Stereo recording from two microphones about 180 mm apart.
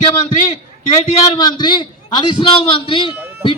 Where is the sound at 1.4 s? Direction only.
25° left (ahead or behind).